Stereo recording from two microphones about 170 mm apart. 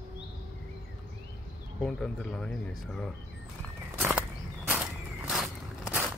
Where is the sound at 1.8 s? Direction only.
5° left (ahead or behind).